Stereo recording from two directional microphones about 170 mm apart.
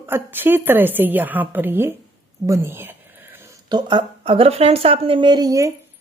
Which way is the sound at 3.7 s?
25° right (ahead or behind).